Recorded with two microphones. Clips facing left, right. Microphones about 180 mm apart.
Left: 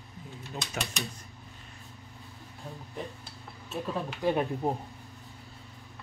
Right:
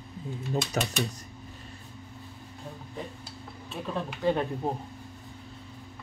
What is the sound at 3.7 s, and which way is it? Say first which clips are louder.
Speech: even; 5° left (ahead or behind).